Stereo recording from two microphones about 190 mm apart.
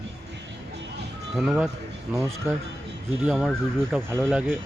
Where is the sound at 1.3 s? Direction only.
5° right (ahead or behind).